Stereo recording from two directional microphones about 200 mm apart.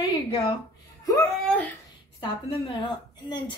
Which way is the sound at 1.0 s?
15° left (ahead or behind).